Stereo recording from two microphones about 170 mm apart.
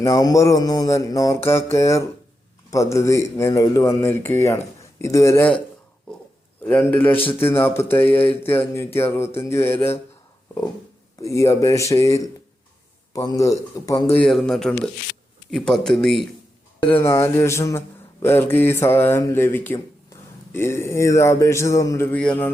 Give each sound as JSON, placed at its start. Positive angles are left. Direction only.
{"t": 0.0, "sound": "speech", "side_deg": 20}
{"t": 1.7, "sound": "mantra", "side_deg": 15}
{"t": 6.7, "sound": "mantra", "side_deg": 10}
{"t": 11.2, "sound": "mantra", "side_deg": 20}
{"t": 13.1, "sound": "speech", "side_deg": 20}
{"t": 14.2, "sound": "speech", "side_deg": 5}
{"t": 16.8, "sound": "mantra", "side_deg": 15}